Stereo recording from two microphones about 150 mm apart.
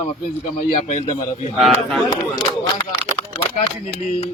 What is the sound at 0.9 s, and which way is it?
Speech, 50° left (ahead or behind).